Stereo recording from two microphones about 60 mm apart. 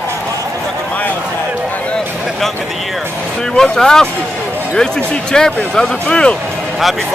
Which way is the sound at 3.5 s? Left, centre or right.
Centre.